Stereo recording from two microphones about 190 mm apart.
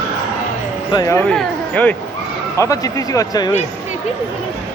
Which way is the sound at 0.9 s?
20° left (ahead or behind).